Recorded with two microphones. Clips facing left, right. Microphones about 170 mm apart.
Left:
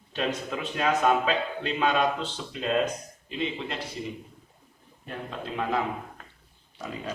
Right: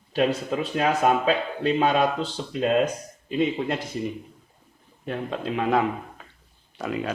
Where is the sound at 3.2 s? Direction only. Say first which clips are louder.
Right 8 dB; 50° right (ahead or behind).